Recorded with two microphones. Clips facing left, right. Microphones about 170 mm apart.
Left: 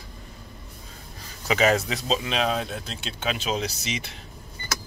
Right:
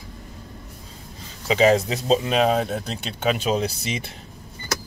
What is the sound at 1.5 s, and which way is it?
Speech, 30° right (ahead or behind).